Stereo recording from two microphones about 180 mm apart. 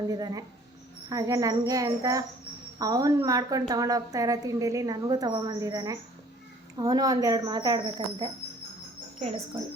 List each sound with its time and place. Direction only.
0.1 s a woman's voice: 20° right (ahead or behind)